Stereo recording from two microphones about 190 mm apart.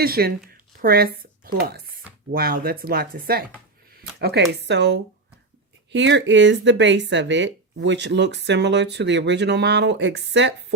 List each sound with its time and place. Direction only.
0.0 s speech: 55° right (ahead or behind)
0.5 s a sound: 50° right (ahead or behind)
2.3 s speech: 50° right (ahead or behind); by 10.5 s 70° right (ahead or behind)